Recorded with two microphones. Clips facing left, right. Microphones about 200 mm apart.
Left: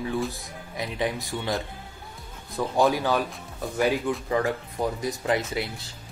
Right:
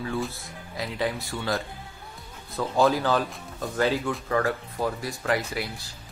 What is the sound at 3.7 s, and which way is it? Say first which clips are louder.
A man's voice: left 1 dB; 15° left (ahead or behind).